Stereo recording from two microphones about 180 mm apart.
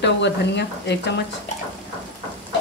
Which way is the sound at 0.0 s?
75° left (ahead or behind).